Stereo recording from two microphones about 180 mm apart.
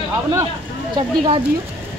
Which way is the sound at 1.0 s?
30° right (ahead or behind).